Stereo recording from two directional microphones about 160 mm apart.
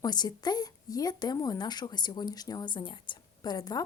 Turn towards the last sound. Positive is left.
turn(degrees=25)  # may be behind; listen again after turning